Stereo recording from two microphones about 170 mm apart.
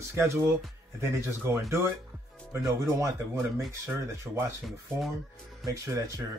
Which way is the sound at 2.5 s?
20° right (ahead or behind).